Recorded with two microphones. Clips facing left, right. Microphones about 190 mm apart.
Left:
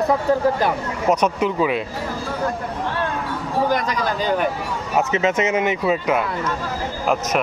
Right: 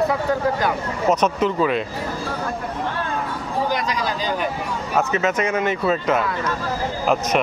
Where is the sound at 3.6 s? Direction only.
50° left (ahead or behind).